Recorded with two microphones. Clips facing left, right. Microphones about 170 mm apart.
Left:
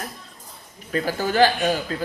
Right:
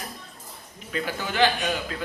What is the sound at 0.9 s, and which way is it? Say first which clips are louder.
Speech: left 6 dB; 40° left (ahead or behind).